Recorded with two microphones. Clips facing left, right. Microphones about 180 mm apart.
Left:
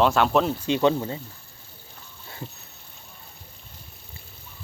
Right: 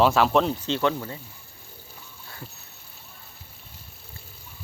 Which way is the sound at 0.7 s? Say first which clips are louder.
Left 4 dB; 20° left (ahead or behind).